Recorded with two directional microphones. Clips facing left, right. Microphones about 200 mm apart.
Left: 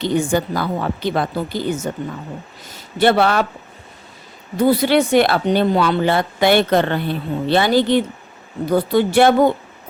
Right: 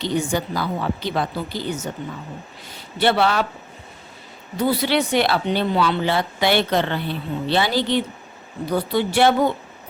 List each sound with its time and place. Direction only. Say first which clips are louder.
0.0 s speech: left 4 dB; 50° left (ahead or behind)
4.5 s speech: left 5 dB; 50° left (ahead or behind)